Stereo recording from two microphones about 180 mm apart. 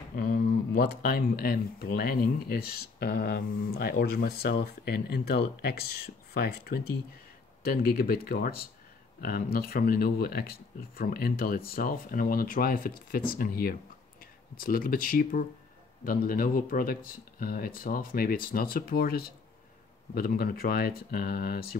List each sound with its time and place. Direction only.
0.1 s speech: 50° left (ahead or behind)